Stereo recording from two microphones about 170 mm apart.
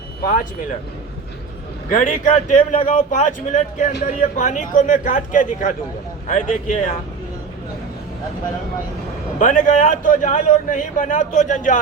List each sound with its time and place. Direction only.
1.9 s a man's voice: 50° left (ahead or behind)
9.4 s a man's voice: 50° left (ahead or behind)